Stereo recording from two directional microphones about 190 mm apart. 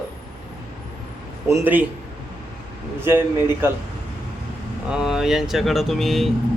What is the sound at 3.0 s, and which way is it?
Speech, 10° right (ahead or behind).